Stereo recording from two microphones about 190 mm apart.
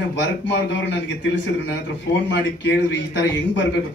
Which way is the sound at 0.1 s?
70° left (ahead or behind).